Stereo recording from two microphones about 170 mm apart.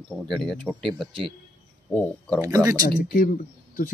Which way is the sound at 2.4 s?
20° right (ahead or behind).